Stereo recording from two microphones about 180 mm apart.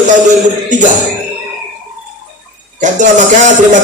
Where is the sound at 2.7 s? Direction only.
45° right (ahead or behind).